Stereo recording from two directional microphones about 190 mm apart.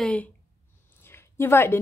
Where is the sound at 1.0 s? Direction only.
10° left (ahead or behind).